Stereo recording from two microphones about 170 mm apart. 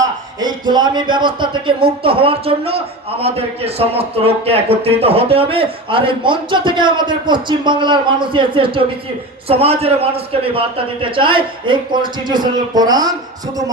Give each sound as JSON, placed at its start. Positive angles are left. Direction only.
{"t": 0.0, "sound": "speech", "side_deg": -25}